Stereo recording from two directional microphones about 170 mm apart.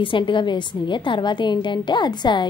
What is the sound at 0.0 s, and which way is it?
A woman's voice, 30° left (ahead or behind).